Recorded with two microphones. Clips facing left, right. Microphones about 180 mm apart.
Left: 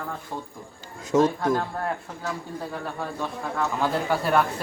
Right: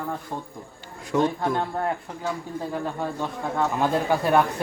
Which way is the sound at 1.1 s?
25° left (ahead or behind).